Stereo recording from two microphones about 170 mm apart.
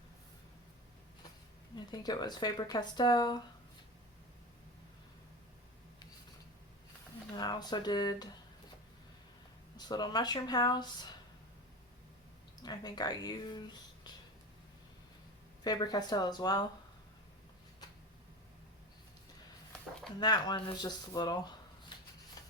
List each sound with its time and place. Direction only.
1.7 s speech: 25° left (ahead or behind)
7.3 s speech: 25° left (ahead or behind)
9.7 s speech: 25° left (ahead or behind)
12.6 s speech: 20° left (ahead or behind)
15.6 s speech: 25° left (ahead or behind)
20.1 s speech: 25° left (ahead or behind)